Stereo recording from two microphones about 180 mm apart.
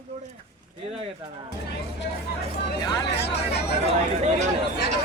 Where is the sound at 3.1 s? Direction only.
65° left (ahead or behind).